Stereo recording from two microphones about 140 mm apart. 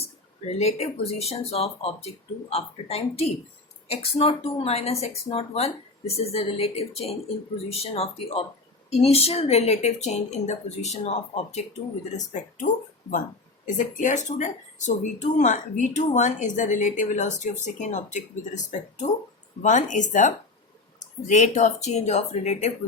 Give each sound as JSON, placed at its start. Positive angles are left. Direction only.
{"t": 0.0, "sound": "speech", "side_deg": 50}
{"t": 12.1, "sound": "speech", "side_deg": 65}